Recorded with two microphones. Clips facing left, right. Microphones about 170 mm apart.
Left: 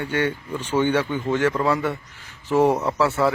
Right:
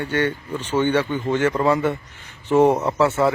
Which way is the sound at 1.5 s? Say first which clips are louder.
Right 3 dB; 20° right (ahead or behind).